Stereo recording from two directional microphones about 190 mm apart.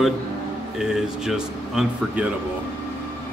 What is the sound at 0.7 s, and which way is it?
Speech, centre (ahead or behind).